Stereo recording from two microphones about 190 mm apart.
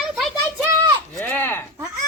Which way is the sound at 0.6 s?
15° right (ahead or behind).